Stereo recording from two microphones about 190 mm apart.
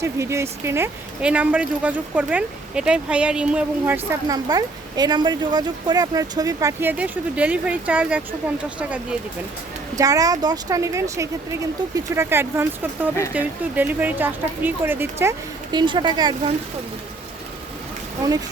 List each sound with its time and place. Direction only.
0.0 s a woman's voice: 15° right (ahead or behind)
10.0 s a woman's voice: 20° right (ahead or behind)